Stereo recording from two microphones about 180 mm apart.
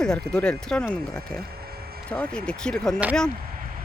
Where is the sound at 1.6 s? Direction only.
60° right (ahead or behind).